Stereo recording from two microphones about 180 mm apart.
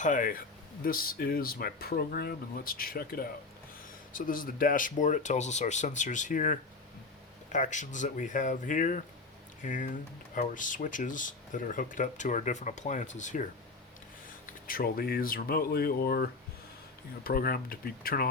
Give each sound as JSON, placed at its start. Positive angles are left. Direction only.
{"t": 0.0, "sound": "speech", "side_deg": 45}
{"t": 14.4, "sound": "speech", "side_deg": 55}